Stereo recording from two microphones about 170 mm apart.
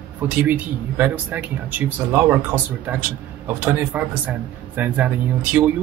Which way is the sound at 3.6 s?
10° right (ahead or behind).